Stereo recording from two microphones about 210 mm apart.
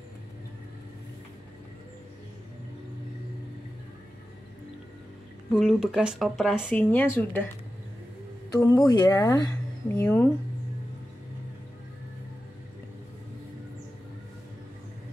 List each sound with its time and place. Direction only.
5.5 s speech: centre (ahead or behind)
8.5 s speech: 15° left (ahead or behind)
9.9 s speech: 5° left (ahead or behind)